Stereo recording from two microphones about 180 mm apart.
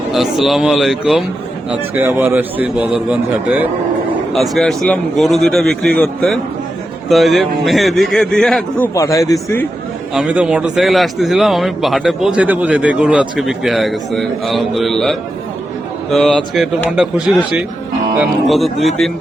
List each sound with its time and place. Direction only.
0.1 s a man's voice: centre (ahead or behind)
9.0 s a man's voice: 20° left (ahead or behind)
10.2 s a man's voice: 5° right (ahead or behind)